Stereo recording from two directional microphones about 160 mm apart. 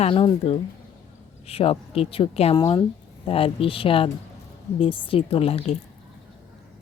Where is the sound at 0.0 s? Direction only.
35° left (ahead or behind).